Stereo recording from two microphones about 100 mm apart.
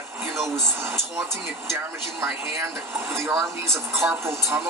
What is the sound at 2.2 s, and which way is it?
Speech, 25° right (ahead or behind).